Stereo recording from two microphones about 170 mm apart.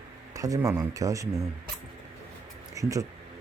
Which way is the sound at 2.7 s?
20° right (ahead or behind).